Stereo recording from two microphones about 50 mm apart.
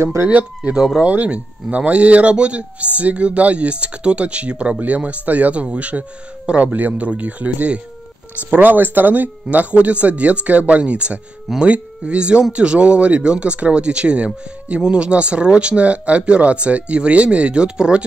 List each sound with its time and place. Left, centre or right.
0.0 s speech: right
1.0 s speech: right